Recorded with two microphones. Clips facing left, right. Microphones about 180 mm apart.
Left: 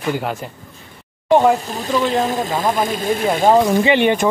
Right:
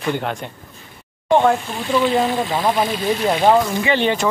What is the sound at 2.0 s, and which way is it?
Speech, centre (ahead or behind).